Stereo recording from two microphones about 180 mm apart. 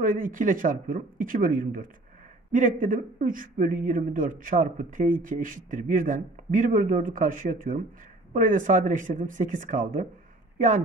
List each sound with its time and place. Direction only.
0.0 s speech: 50° right (ahead or behind)